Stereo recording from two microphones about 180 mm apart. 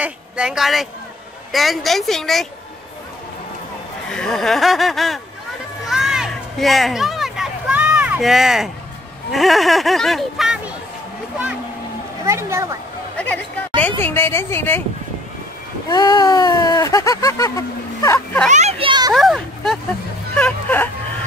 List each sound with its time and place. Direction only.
0.0 s speech: 5° right (ahead or behind)
4.1 s speech: 5° left (ahead or behind)
5.9 s a sound: centre (ahead or behind)
9.3 s speech: centre (ahead or behind)
12.3 s speech: 15° right (ahead or behind)
13.7 s a woman's voice: 10° left (ahead or behind)
15.9 s speech: 25° left (ahead or behind)
18.5 s a child's voice: 40° right (ahead or behind)
19.1 s speech: centre (ahead or behind)
20.3 s whimper: 10° left (ahead or behind)